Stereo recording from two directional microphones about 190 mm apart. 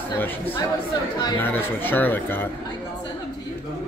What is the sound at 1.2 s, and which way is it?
Speech, 20° left (ahead or behind).